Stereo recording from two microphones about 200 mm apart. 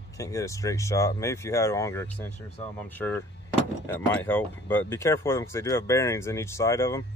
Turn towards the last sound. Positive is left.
turn(degrees=15)  # may be behind; listen again after turning